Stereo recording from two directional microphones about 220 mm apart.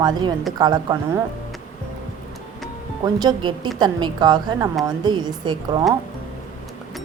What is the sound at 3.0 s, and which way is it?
Speech, 20° right (ahead or behind).